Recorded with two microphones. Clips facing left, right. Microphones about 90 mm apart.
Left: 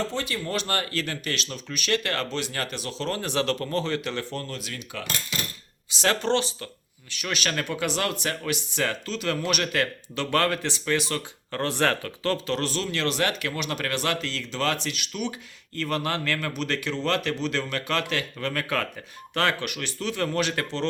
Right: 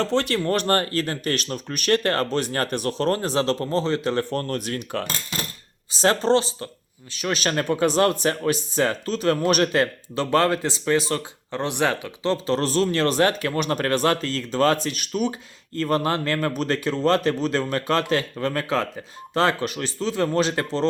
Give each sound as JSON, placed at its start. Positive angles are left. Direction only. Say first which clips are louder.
{"t": 0.0, "sound": "speech", "louder": "right 7 dB", "side_deg": -70}
{"t": 0.4, "sound": "speech", "louder": "right 7 dB", "side_deg": -50}
{"t": 4.3, "sound": "cutlery", "louder": "right 8 dB", "side_deg": -50}
{"t": 6.0, "sound": "speech", "louder": "right 5 dB", "side_deg": -35}
{"t": 11.6, "sound": "speech", "louder": "right 1 dB", "side_deg": -15}
{"t": 12.5, "sound": "speech", "louder": "right 7 dB", "side_deg": -35}